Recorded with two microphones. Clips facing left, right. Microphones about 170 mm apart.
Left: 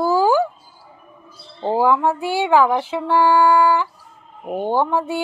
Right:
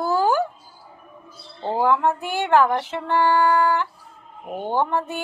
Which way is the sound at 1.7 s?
10° left (ahead or behind).